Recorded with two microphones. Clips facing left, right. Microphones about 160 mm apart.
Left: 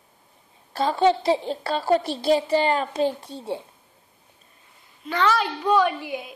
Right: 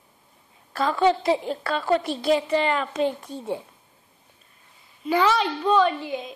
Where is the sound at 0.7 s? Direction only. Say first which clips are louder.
Left 1 dB; 30° left (ahead or behind).